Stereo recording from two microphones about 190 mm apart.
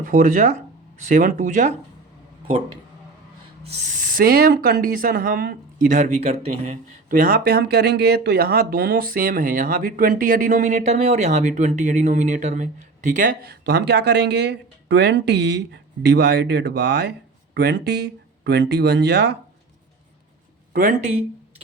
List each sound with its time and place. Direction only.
0.0 s speech: 45° right (ahead or behind)
3.8 s speech: 45° right (ahead or behind)
7.1 s speech: 50° right (ahead or behind); by 19.4 s 65° right (ahead or behind)